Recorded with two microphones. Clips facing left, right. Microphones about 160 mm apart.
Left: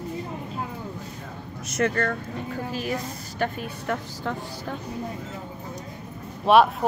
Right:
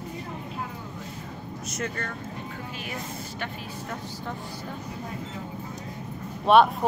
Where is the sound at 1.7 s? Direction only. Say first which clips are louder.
Left 9 dB; 70° left (ahead or behind).